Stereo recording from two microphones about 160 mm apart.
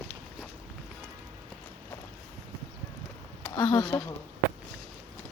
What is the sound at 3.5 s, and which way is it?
Speech, 25° left (ahead or behind).